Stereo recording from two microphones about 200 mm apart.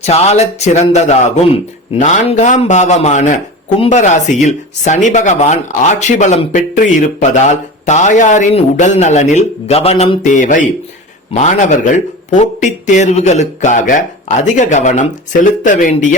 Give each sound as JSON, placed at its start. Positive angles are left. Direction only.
{"t": 0.0, "sound": "speech", "side_deg": 30}